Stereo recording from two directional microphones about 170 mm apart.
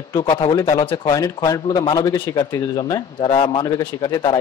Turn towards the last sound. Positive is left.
turn(degrees=25)  # may be behind; listen again after turning